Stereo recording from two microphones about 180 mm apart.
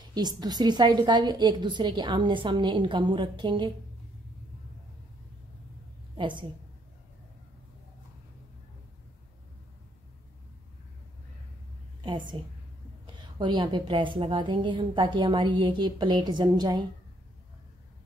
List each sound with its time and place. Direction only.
0.1 s a woman's voice: 25° right (ahead or behind)
6.1 s a woman's voice: 25° right (ahead or behind)
12.0 s a woman's voice: 25° right (ahead or behind)